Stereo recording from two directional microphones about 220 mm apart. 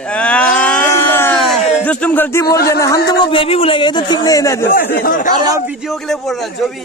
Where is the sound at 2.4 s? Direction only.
45° left (ahead or behind).